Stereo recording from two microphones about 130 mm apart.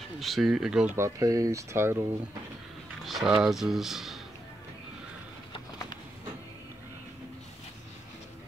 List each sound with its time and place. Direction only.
0.2 s speech: centre (ahead or behind)
0.9 s speech: 25° right (ahead or behind)
3.1 s speech: centre (ahead or behind)